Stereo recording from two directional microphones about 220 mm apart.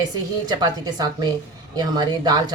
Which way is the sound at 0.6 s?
20° right (ahead or behind).